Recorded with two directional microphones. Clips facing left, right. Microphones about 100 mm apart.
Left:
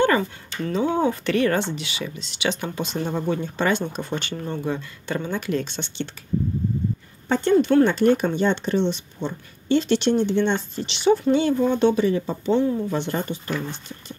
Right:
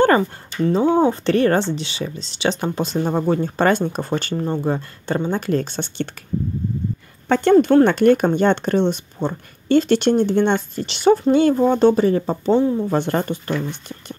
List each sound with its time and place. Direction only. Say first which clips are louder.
0.2 s speech: right 7 dB; 30° right (ahead or behind); by 6.2 s 45° right (ahead or behind)
7.2 s speech: right 5 dB; 70° right (ahead or behind)
7.5 s speech: right 4 dB; 40° right (ahead or behind)
7.8 s speech: right 4 dB; 60° right (ahead or behind)